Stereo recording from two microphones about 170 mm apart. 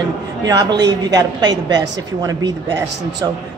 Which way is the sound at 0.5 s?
25° right (ahead or behind).